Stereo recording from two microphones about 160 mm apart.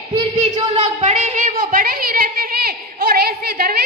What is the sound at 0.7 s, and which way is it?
A woman's voice, 45° right (ahead or behind).